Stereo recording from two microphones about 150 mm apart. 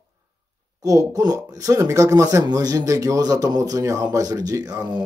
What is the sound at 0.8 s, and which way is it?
Speech, 20° right (ahead or behind).